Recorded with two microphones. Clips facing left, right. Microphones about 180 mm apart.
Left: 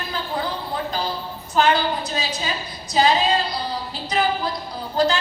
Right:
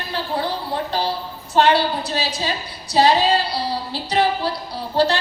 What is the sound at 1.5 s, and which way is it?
A woman's voice, 30° right (ahead or behind).